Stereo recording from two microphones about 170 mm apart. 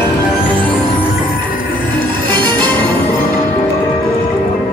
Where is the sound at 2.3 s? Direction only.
25° right (ahead or behind).